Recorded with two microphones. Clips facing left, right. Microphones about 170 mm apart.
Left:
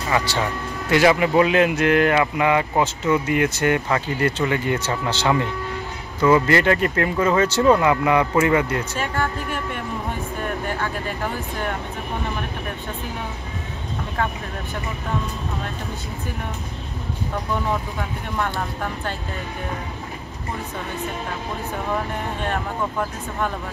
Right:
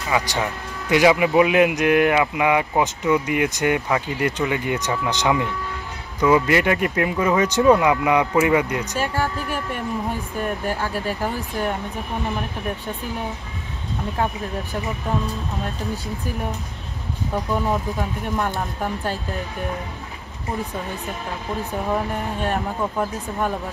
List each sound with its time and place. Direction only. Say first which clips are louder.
0.1 s speech: even; 15° right (ahead or behind)
18.4 s speech: left 2 dB; 15° right (ahead or behind)
22.5 s speech: right 1 dB; 15° right (ahead or behind)